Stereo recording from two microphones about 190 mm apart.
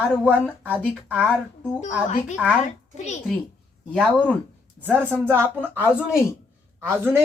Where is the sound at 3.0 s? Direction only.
40° left (ahead or behind).